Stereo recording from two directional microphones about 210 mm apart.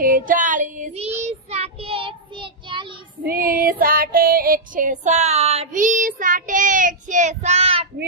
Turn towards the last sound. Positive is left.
turn(degrees=-30)  # may be behind; listen again after turning